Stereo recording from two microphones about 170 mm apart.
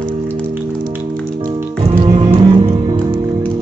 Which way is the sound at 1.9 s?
35° right (ahead or behind).